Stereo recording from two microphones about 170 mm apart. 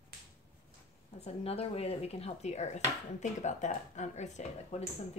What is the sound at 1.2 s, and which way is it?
Speech, 35° left (ahead or behind).